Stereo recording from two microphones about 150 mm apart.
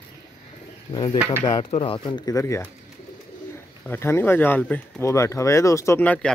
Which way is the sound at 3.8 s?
15° left (ahead or behind).